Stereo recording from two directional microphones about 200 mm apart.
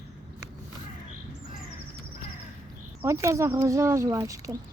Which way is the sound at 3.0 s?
15° right (ahead or behind).